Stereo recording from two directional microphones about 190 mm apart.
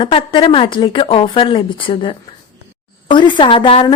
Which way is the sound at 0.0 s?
30° left (ahead or behind).